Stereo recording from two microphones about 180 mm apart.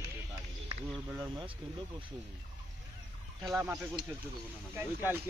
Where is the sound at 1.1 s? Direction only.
25° right (ahead or behind).